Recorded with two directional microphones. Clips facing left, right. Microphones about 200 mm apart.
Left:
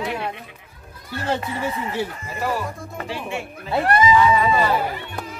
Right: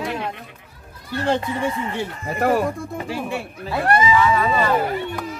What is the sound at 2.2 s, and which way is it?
Speech, 55° right (ahead or behind).